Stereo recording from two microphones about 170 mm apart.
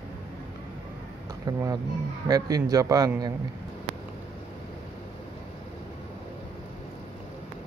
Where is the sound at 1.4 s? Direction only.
20° right (ahead or behind).